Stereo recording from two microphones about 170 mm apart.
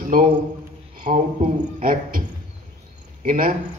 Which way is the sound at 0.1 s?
55° right (ahead or behind).